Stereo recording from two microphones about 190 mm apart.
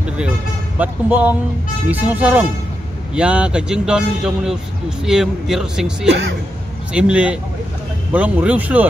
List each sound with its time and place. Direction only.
0.7 s speech: 10° right (ahead or behind)
6.0 s speech: 70° right (ahead or behind)
6.9 s speech: 5° right (ahead or behind)